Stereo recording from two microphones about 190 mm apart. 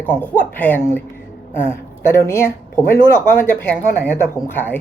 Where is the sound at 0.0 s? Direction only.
10° left (ahead or behind).